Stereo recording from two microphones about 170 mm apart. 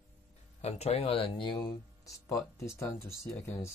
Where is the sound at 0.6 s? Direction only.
40° left (ahead or behind).